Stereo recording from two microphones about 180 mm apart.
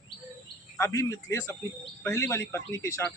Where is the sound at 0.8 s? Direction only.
15° left (ahead or behind).